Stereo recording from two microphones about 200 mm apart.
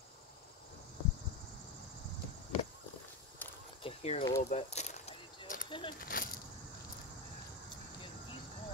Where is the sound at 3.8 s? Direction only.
30° left (ahead or behind).